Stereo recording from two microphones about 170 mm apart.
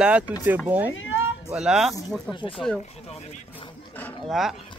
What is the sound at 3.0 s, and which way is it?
Speech, 40° left (ahead or behind).